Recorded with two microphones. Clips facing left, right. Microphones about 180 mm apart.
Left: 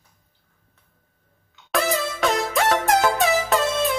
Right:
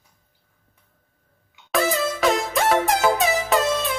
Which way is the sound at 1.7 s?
Centre (ahead or behind).